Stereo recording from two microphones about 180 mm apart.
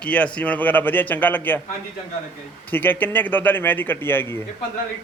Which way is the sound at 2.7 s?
10° left (ahead or behind).